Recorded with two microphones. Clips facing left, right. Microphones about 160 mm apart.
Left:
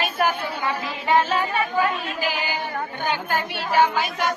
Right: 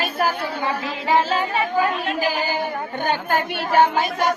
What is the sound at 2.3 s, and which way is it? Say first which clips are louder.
A woman's voice: right 4 dB; 45° right (ahead or behind).